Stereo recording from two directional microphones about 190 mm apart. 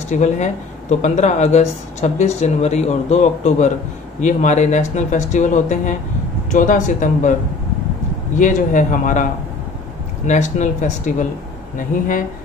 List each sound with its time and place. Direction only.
0.1 s speech: 40° left (ahead or behind)
8.4 s speech: 40° left (ahead or behind)